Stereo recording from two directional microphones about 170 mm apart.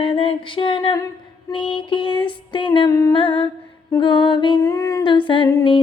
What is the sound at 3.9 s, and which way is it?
Female singing, 30° left (ahead or behind).